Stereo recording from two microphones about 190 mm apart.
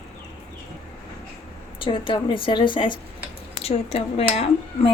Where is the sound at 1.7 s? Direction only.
25° left (ahead or behind).